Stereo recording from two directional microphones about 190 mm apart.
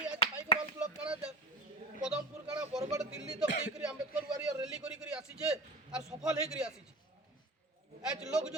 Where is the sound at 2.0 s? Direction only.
5° right (ahead or behind).